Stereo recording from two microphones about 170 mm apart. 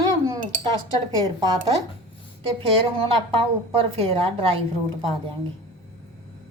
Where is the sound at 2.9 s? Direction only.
30° right (ahead or behind).